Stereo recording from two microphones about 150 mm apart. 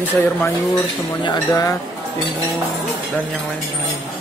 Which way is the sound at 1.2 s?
30° left (ahead or behind).